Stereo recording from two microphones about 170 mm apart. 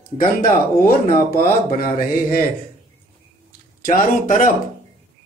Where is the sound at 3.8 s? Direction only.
55° left (ahead or behind).